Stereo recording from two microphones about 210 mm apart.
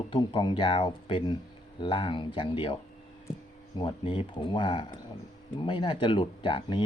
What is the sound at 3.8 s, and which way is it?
Speech, 25° left (ahead or behind).